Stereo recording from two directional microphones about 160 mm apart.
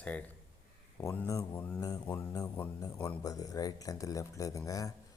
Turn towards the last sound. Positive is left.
turn(degrees=20)  # may be behind; listen again after turning